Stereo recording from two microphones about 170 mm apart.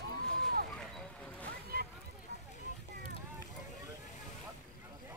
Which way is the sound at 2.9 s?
65° right (ahead or behind).